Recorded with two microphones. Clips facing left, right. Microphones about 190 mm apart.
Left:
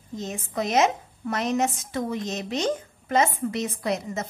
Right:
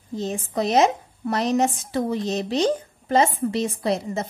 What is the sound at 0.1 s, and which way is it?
Speech, 30° right (ahead or behind).